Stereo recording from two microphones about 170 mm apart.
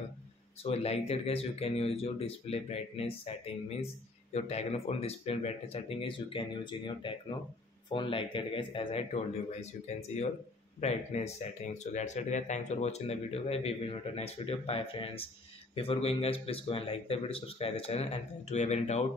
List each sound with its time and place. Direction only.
0.7 s speech: 35° left (ahead or behind)